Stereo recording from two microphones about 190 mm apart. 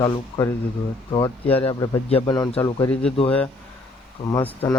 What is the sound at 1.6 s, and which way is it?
Speech, 30° left (ahead or behind).